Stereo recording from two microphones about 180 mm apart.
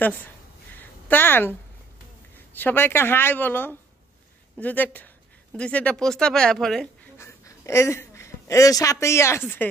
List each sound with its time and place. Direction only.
0.0 s speech: 10° left (ahead or behind)
0.7 s a sound: 10° left (ahead or behind)
2.5 s speech: 10° left (ahead or behind)
7.2 s a woman's voice: 15° left (ahead or behind)